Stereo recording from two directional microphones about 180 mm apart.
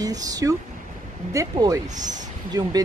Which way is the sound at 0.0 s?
20° right (ahead or behind).